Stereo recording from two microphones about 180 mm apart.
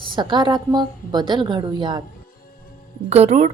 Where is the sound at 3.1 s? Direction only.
35° right (ahead or behind).